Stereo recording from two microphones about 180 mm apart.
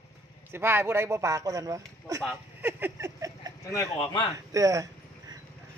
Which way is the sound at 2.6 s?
10° right (ahead or behind).